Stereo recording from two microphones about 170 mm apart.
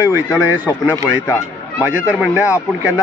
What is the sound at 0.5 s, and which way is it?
A man's voice, 10° right (ahead or behind).